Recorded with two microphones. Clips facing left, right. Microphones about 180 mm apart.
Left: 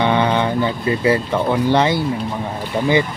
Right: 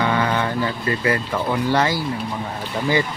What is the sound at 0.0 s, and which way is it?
Speech, 20° left (ahead or behind).